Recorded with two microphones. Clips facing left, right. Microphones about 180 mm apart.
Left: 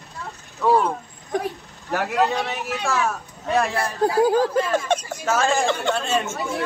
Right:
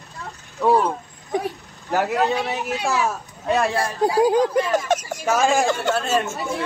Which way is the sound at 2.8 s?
10° right (ahead or behind).